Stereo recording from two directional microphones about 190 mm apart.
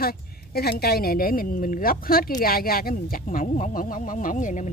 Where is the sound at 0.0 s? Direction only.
55° left (ahead or behind).